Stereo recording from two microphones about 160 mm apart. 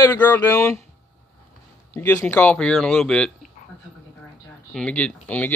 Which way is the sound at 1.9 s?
15° left (ahead or behind).